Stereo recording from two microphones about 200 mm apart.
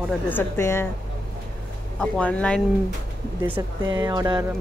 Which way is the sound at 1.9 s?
5° left (ahead or behind).